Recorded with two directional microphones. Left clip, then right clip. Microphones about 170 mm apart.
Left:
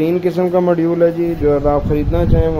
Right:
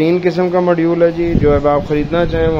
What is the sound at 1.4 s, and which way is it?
Speech, centre (ahead or behind).